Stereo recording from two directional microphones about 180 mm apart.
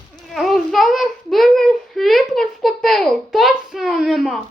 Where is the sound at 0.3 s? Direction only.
Centre (ahead or behind).